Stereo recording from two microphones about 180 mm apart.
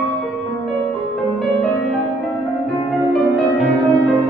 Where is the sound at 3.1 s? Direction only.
5° left (ahead or behind).